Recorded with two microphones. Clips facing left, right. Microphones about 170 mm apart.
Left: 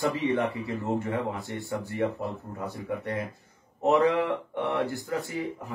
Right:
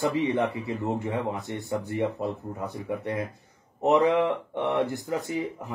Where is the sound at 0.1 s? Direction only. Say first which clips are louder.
Right 1 dB; 20° right (ahead or behind).